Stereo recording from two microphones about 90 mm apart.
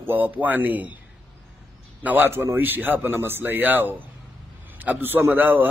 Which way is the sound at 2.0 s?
20° right (ahead or behind).